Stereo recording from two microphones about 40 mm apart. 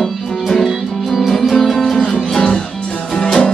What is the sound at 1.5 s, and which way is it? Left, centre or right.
Music, centre.